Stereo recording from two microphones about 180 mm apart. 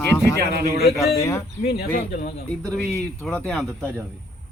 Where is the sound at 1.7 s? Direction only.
60° left (ahead or behind).